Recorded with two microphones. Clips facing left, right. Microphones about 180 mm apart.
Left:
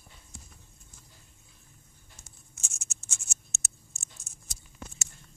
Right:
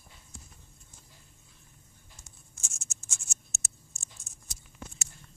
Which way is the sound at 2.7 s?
70° left (ahead or behind).